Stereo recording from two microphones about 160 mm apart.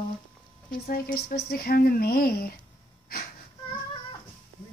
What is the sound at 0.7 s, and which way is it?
Speech, 65° left (ahead or behind).